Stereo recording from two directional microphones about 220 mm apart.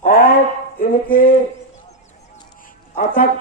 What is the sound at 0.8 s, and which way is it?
Speech, 40° left (ahead or behind).